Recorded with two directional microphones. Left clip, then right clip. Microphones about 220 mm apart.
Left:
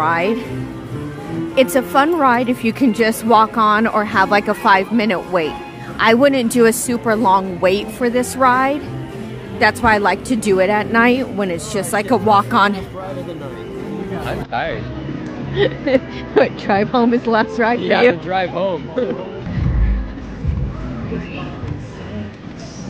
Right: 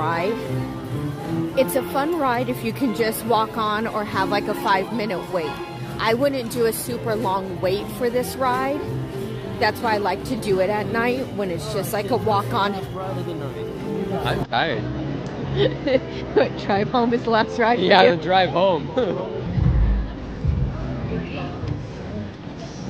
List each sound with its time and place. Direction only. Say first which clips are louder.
0.0 s speech: left 6 dB; 25° left (ahead or behind)
1.5 s a woman's voice: left 7 dB; 35° left (ahead or behind)
14.2 s speech: even; 30° right (ahead or behind)
16.3 s speech: left 5 dB; 20° left (ahead or behind)
18.3 s speech: right 1 dB; 40° right (ahead or behind)